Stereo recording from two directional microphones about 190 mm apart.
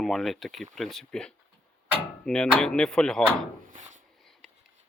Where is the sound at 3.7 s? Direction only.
40° right (ahead or behind).